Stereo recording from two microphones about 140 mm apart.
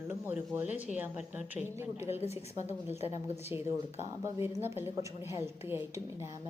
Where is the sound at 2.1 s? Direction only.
50° left (ahead or behind).